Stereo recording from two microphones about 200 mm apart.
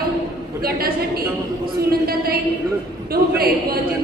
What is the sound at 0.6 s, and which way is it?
A woman's voice, 50° right (ahead or behind).